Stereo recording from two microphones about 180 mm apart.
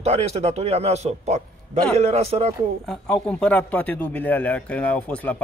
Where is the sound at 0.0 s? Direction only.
35° right (ahead or behind).